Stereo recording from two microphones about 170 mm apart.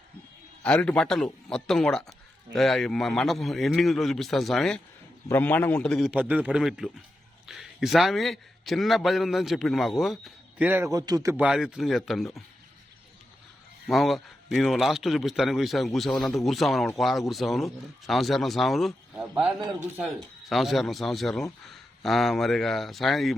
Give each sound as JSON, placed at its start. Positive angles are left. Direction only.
{"t": 0.6, "sound": "a man's voice", "side_deg": 5}
{"t": 10.9, "sound": "a man's voice", "side_deg": -20}
{"t": 11.3, "sound": "a man's voice", "side_deg": -5}
{"t": 13.8, "sound": "a man's voice", "side_deg": 0}